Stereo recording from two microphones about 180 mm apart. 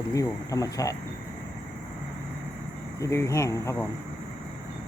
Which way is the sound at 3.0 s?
15° left (ahead or behind).